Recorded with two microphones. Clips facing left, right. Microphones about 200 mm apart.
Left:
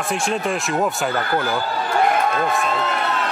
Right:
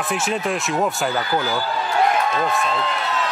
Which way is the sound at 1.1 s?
55° left (ahead or behind).